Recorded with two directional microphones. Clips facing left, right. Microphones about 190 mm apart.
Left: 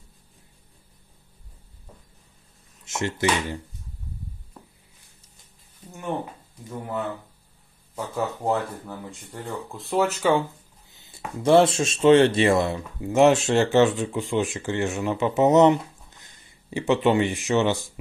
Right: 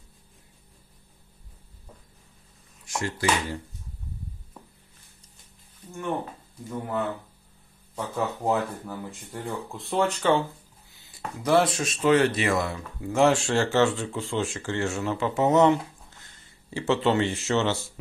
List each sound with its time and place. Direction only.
2.8 s speech: 25° left (ahead or behind)
8.2 s speech: centre (ahead or behind)
10.9 s a sound: 20° left (ahead or behind)
11.4 s speech: 25° left (ahead or behind)